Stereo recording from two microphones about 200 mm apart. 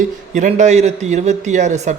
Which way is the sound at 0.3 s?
35° right (ahead or behind).